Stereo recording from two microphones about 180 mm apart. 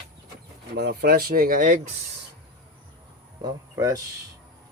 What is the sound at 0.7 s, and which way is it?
Speech, 65° right (ahead or behind).